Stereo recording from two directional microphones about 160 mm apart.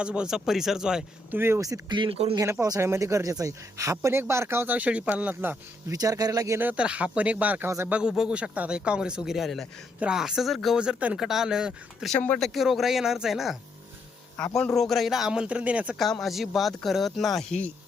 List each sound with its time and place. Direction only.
0.0 s speech: 5° right (ahead or behind); by 2.3 s 35° right (ahead or behind)
2.3 s speech: 20° right (ahead or behind)
5.9 s speech: 25° right (ahead or behind); by 17.4 s centre (ahead or behind)